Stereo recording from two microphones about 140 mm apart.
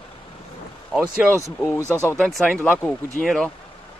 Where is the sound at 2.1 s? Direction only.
5° left (ahead or behind).